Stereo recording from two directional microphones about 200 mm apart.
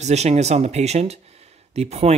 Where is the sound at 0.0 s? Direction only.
35° right (ahead or behind).